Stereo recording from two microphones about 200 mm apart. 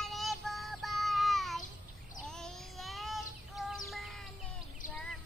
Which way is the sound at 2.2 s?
Centre (ahead or behind).